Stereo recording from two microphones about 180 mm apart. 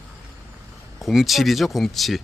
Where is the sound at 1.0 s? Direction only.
Centre (ahead or behind).